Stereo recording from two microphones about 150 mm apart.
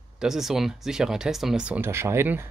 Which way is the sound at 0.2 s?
Centre (ahead or behind).